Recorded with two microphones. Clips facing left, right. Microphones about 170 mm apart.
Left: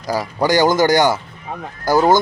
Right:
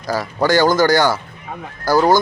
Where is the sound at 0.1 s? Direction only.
15° left (ahead or behind).